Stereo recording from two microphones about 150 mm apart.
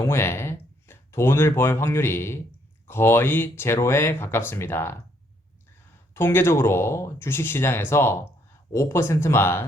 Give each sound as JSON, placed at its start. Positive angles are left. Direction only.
{"t": 0.0, "sound": "speech", "side_deg": 15}
{"t": 6.1, "sound": "speech", "side_deg": 15}